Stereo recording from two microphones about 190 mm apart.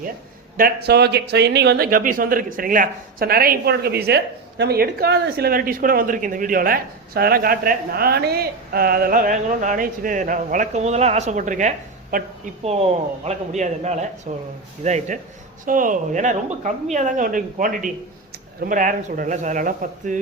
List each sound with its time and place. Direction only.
0.5 s speech: 55° right (ahead or behind)
12.6 s speech: 35° right (ahead or behind)